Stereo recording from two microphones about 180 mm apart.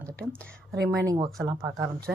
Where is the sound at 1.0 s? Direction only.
20° right (ahead or behind).